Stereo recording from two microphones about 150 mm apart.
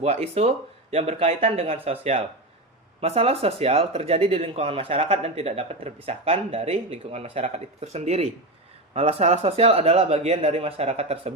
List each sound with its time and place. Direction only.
0.0 s speech: 45° right (ahead or behind)